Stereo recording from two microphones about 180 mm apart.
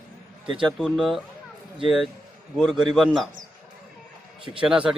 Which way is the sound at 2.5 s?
Centre (ahead or behind).